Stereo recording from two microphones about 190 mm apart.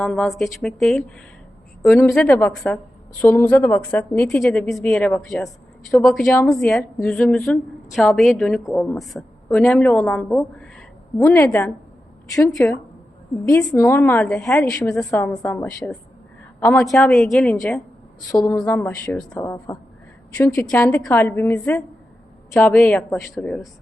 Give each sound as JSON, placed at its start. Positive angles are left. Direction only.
{"t": 0.0, "sound": "a woman's voice", "side_deg": 0}
{"t": 2.1, "sound": "a woman's voice", "side_deg": 5}
{"t": 18.3, "sound": "a woman's voice", "side_deg": 20}